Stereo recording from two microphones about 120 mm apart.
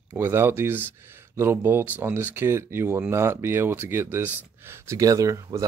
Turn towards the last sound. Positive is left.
turn(degrees=-25)  # may be behind; listen again after turning